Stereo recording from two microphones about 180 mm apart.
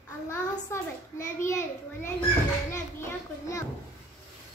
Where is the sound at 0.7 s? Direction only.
15° left (ahead or behind).